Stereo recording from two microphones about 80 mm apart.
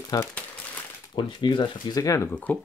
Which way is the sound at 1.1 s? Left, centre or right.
Left.